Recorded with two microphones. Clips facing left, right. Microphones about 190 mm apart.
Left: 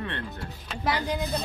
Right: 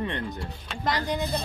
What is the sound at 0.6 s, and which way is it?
Speech, 5° left (ahead or behind).